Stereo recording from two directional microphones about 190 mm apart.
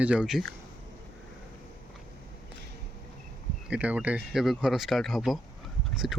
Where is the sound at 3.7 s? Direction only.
5° right (ahead or behind).